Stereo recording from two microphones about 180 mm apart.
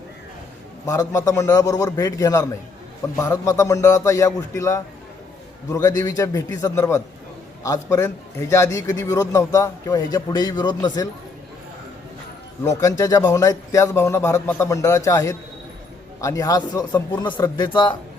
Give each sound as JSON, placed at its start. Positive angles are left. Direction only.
{"t": 0.9, "sound": "a man's voice", "side_deg": 20}
{"t": 12.6, "sound": "a man's voice", "side_deg": 20}